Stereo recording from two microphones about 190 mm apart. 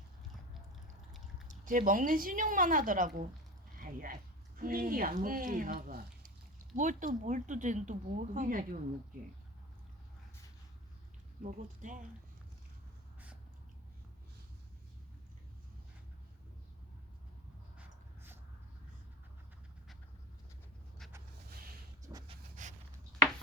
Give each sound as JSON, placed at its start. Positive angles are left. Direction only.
{"t": 1.5, "sound": "speech", "side_deg": -45}
{"t": 11.4, "sound": "speech", "side_deg": -40}
{"t": 17.7, "sound": "a sound", "side_deg": -10}
{"t": 22.3, "sound": "dog", "side_deg": -40}